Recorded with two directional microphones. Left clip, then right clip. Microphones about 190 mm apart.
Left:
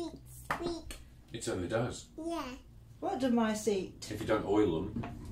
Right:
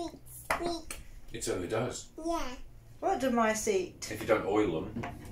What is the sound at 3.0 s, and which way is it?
Speech, 35° left (ahead or behind).